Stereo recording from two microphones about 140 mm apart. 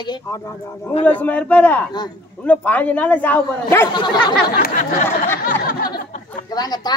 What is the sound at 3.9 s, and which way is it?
Speech, 30° left (ahead or behind).